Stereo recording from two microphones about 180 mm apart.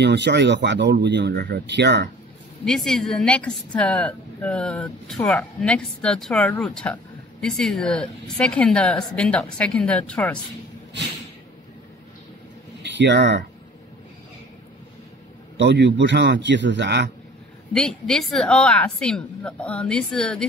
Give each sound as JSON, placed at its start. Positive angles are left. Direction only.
{"t": 0.0, "sound": "speech", "side_deg": -75}
{"t": 2.6, "sound": "a woman's voice", "side_deg": 5}
{"t": 12.8, "sound": "speech", "side_deg": -75}
{"t": 15.5, "sound": "speech", "side_deg": -75}
{"t": 17.7, "sound": "a woman's voice", "side_deg": 5}